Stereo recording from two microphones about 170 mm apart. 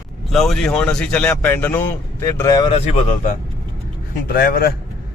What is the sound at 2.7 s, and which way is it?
Speech, 35° left (ahead or behind).